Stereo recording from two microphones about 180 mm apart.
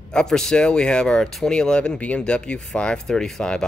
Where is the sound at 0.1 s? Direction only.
5° left (ahead or behind).